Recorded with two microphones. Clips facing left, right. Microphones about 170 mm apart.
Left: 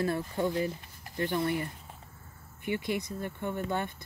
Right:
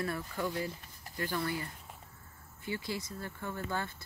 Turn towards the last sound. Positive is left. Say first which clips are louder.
# left 5 dB
turn(degrees=20)  # may be behind; listen again after turning